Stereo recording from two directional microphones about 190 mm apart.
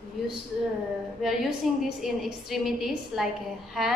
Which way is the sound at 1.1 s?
Centre (ahead or behind).